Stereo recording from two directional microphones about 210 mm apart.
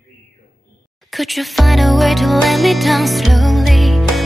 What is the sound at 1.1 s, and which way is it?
Music, centre (ahead or behind).